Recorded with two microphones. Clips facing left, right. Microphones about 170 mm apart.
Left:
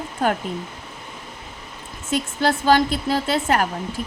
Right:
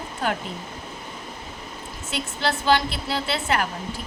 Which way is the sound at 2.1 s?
45° left (ahead or behind).